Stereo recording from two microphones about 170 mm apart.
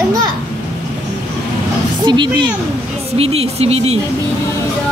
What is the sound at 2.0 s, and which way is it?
Speech, 25° right (ahead or behind).